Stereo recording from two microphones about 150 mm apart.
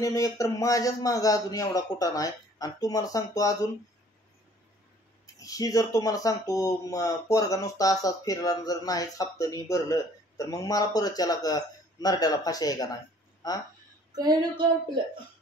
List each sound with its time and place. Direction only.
0.0 s speech: 20° left (ahead or behind)
5.2 s speech: 25° left (ahead or behind)
14.1 s a sound: 25° right (ahead or behind)